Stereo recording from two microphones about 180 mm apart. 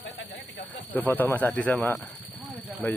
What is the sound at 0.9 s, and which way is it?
Speech, 10° left (ahead or behind).